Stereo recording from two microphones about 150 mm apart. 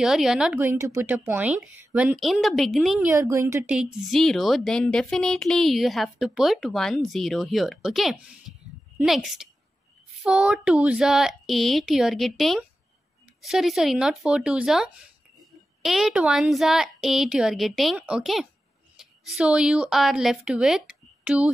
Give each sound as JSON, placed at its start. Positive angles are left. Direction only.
{"t": 0.0, "sound": "a woman's voice", "side_deg": -5}
{"t": 3.1, "sound": "speech", "side_deg": -20}
{"t": 3.6, "sound": "a woman's voice", "side_deg": -5}